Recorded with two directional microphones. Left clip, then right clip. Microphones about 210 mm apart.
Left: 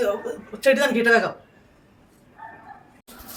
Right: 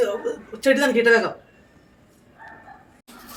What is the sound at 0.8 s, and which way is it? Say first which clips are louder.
Speech: right 1 dB; 50° left (ahead or behind).